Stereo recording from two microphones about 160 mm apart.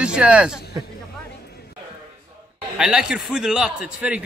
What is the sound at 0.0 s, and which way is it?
Speech, 5° right (ahead or behind).